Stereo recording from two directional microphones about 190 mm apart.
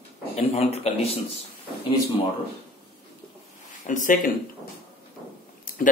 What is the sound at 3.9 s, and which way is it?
Speech, 40° left (ahead or behind).